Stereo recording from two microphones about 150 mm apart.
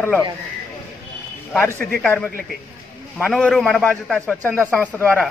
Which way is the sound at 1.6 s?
15° left (ahead or behind).